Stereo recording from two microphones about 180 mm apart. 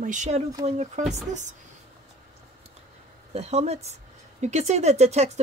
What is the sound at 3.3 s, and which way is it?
Speech, 35° right (ahead or behind).